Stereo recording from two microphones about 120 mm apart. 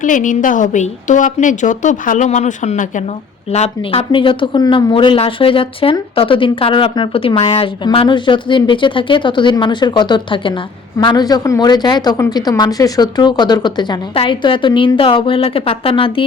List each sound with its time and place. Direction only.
0.0 s a woman's voice: 90° left
3.5 s speech: 60° left (ahead or behind)